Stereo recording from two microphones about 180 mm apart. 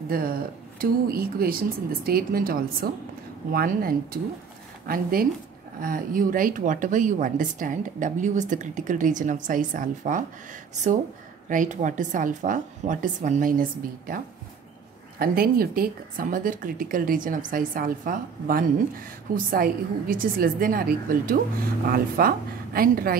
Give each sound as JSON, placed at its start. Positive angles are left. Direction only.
{"t": 0.1, "sound": "a woman's voice", "side_deg": -55}